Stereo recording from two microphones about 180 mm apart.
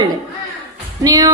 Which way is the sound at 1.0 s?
20° right (ahead or behind).